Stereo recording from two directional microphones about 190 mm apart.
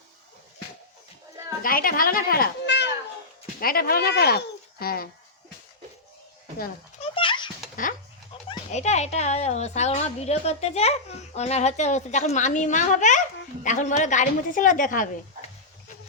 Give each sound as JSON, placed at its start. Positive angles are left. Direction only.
{"t": 1.6, "sound": "a woman's voice", "side_deg": 50}
{"t": 7.0, "sound": "a sound", "side_deg": 25}
{"t": 8.4, "sound": "a child's voice", "side_deg": 35}